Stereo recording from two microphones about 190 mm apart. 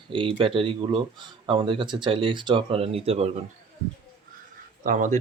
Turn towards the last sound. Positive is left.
turn(degrees=-40)  # may be behind; listen again after turning